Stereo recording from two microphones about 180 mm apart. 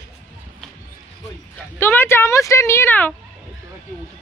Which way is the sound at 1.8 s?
10° left (ahead or behind).